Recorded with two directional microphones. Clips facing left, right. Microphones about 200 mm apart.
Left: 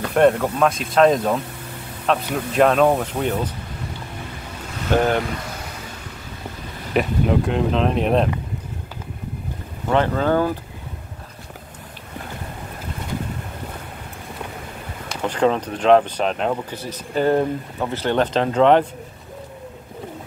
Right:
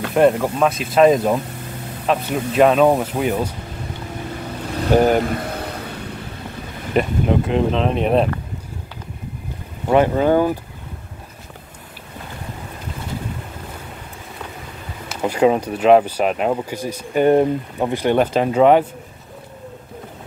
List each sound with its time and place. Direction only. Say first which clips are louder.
0.0 s speech: right 1 dB; 5° right (ahead or behind)
5.0 s vehicle: right 4 dB; 45° right (ahead or behind)
6.9 s speech: right 1 dB; centre (ahead or behind)
9.8 s speech: right 4 dB; 15° right (ahead or behind)
15.0 s speech: right 3 dB; 10° right (ahead or behind)